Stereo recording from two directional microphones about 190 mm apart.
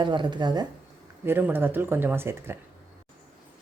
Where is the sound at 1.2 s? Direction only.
10° right (ahead or behind).